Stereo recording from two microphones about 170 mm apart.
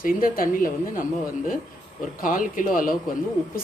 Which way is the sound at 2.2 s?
55° left (ahead or behind).